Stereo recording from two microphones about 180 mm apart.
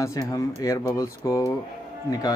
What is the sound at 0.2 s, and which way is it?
Speech, 20° left (ahead or behind).